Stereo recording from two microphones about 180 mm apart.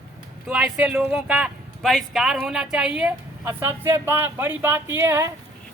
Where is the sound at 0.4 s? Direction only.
5° right (ahead or behind).